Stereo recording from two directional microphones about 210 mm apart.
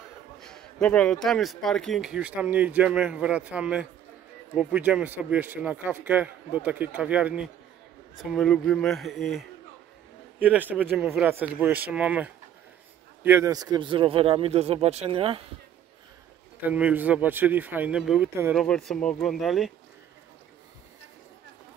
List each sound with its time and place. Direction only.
0.4 s a man's voice: 5° left (ahead or behind); by 15.4 s 25° right (ahead or behind)
16.6 s a man's voice: 5° right (ahead or behind)